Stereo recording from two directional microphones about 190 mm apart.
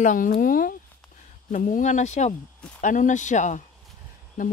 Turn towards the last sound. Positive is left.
turn(degrees=45)  # may be behind; listen again after turning